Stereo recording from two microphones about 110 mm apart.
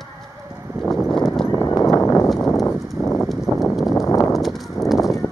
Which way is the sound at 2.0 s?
25° left (ahead or behind).